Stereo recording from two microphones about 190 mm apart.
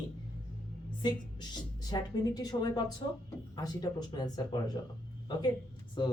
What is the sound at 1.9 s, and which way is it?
Speech, 20° left (ahead or behind).